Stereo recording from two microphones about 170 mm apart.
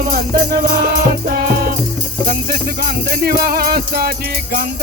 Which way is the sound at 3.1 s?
60° right (ahead or behind).